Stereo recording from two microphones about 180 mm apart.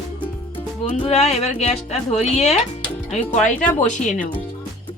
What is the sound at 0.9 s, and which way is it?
A woman's voice, 35° left (ahead or behind).